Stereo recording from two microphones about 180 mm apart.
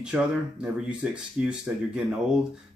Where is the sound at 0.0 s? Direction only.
5° right (ahead or behind).